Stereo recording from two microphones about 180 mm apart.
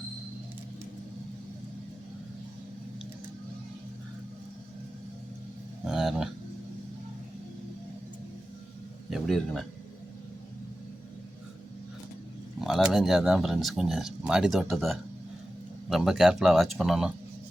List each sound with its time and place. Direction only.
5.9 s speech: centre (ahead or behind)
9.0 s speech: centre (ahead or behind)
12.5 s speech: centre (ahead or behind)